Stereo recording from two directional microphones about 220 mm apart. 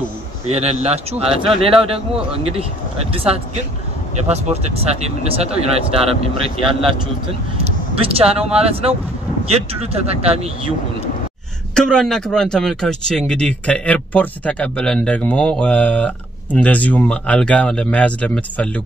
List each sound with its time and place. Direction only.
0.5 s speech: 30° right (ahead or behind)
4.3 s speech: 30° right (ahead or behind)
11.7 s speech: 5° left (ahead or behind)